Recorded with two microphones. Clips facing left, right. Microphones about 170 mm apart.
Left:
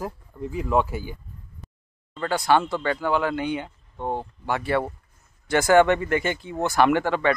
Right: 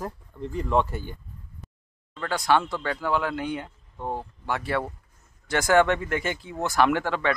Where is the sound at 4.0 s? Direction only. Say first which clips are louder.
Left 3 dB; 25° left (ahead or behind).